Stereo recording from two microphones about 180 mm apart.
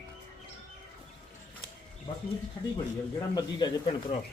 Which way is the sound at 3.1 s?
20° left (ahead or behind).